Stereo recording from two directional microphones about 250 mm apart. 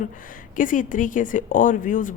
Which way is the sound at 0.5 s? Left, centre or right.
Left.